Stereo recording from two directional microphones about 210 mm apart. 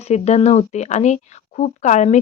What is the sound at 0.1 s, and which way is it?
Speech, 30° left (ahead or behind).